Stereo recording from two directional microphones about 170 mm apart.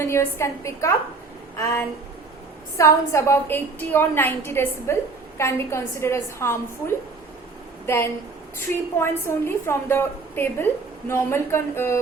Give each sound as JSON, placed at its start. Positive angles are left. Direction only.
{"t": 0.0, "sound": "a woman's voice", "side_deg": 15}